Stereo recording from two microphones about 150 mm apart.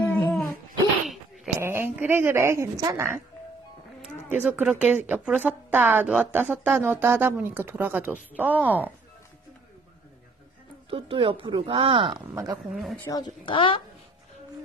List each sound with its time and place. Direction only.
0.0 s dog: 10° left (ahead or behind)
1.0 s a sound: centre (ahead or behind)
1.6 s a woman's voice: 15° right (ahead or behind)
4.4 s a woman's voice: 10° right (ahead or behind)
10.9 s speech: 35° right (ahead or behind)
12.7 s speech: centre (ahead or behind)
13.0 s speech: 25° left (ahead or behind)